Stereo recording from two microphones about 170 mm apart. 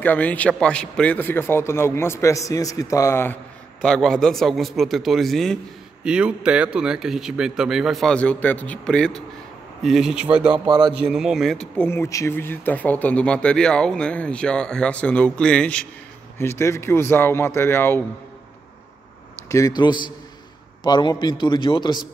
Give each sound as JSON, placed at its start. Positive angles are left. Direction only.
{"t": 0.0, "sound": "speech", "side_deg": 10}
{"t": 3.8, "sound": "a man's voice", "side_deg": 5}
{"t": 11.9, "sound": "speech", "side_deg": 15}
{"t": 19.5, "sound": "a man's voice", "side_deg": 20}